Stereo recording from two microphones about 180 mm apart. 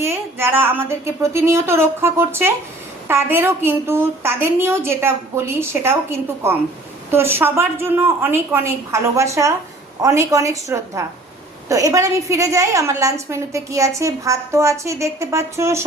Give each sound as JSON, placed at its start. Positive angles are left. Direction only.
{"t": 0.0, "sound": "a woman's voice", "side_deg": -10}